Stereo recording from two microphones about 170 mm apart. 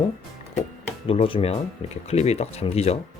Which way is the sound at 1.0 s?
35° left (ahead or behind).